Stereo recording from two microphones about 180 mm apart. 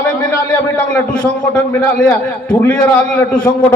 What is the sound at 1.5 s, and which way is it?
A man's voice, 5° left (ahead or behind).